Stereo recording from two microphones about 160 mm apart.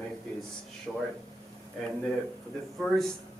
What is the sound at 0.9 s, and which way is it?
Speech, 5° right (ahead or behind).